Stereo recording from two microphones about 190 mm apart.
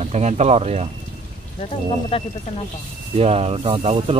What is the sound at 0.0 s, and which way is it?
Speech, 35° right (ahead or behind).